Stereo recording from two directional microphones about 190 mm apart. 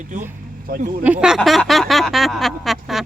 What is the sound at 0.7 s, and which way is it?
Speech, 50° right (ahead or behind).